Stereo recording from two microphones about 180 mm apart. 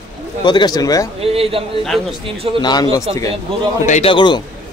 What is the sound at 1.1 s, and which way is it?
Speech, 35° right (ahead or behind).